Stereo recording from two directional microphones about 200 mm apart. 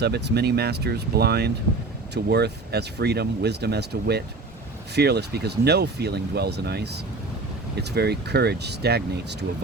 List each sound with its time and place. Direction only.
0.0 s speech: 55° right (ahead or behind)